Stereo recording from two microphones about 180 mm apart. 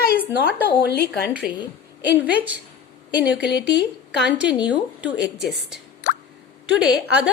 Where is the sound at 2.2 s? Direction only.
10° right (ahead or behind).